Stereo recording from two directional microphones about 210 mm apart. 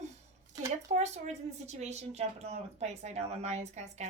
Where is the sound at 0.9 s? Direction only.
30° right (ahead or behind).